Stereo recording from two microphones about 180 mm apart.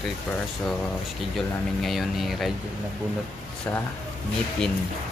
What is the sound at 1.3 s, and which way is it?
Speech, centre (ahead or behind).